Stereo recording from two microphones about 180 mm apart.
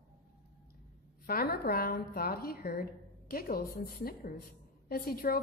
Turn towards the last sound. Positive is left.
turn(degrees=55)  # may be behind; listen again after turning